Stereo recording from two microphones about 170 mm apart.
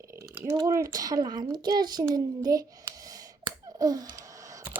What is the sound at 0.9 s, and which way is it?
A woman's voice, 20° right (ahead or behind).